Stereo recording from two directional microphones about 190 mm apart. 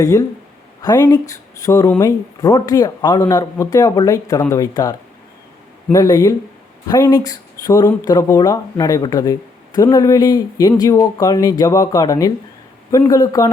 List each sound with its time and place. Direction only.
0.0 s speech: 20° left (ahead or behind)